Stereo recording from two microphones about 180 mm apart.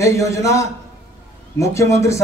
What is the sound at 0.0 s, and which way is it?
A man's voice, 15° left (ahead or behind).